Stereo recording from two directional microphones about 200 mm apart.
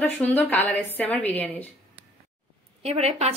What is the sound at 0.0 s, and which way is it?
A woman's voice, 10° left (ahead or behind).